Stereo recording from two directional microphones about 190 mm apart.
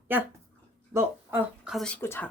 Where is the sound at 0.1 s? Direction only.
10° right (ahead or behind); by 2.3 s 10° left (ahead or behind).